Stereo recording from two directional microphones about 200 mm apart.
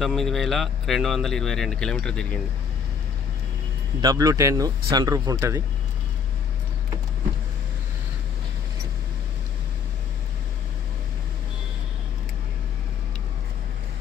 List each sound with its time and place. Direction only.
0.0 s speech: centre (ahead or behind)
4.0 s speech: 20° right (ahead or behind)